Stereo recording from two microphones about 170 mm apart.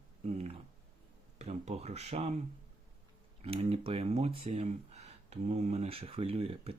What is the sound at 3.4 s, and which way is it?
Speech, 35° right (ahead or behind).